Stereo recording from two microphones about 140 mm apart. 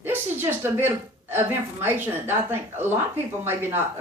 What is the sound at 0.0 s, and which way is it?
A woman's voice, 15° right (ahead or behind).